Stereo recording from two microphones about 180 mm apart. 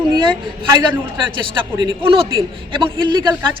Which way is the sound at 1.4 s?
30° right (ahead or behind).